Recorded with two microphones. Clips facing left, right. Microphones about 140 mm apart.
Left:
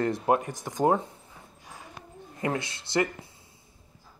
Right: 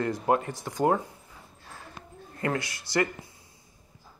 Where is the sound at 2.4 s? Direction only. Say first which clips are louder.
Even; 20° left (ahead or behind).